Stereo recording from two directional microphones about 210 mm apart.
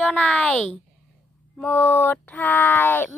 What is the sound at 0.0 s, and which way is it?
Speech, 5° left (ahead or behind).